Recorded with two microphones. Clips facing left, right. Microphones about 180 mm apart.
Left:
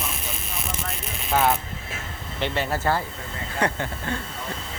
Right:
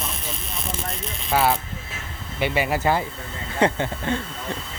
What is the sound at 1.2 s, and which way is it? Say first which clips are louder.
Speech: right 1 dB; centre (ahead or behind).